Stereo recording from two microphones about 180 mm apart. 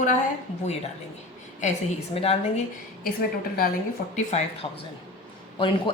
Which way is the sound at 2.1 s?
35° left (ahead or behind).